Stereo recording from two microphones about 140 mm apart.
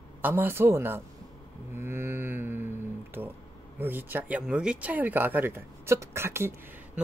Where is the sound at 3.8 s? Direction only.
15° right (ahead or behind).